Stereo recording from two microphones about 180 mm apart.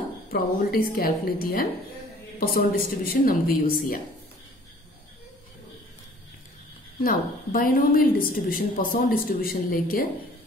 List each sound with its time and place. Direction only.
0.3 s speech: 55° left (ahead or behind)
7.0 s speech: 50° left (ahead or behind)